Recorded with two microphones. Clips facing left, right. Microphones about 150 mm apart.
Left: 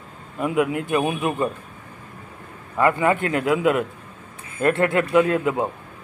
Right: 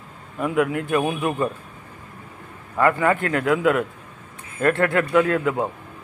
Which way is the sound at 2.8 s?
20° left (ahead or behind).